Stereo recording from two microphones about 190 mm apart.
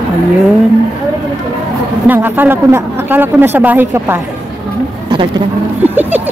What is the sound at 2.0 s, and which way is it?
A woman's voice, 10° right (ahead or behind).